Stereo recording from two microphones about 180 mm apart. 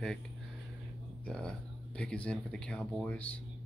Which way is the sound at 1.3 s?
5° left (ahead or behind).